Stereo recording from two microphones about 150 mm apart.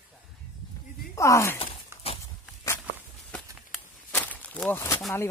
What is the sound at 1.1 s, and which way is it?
Speech, 20° left (ahead or behind).